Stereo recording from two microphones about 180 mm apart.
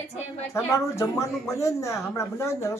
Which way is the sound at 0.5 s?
15° left (ahead or behind).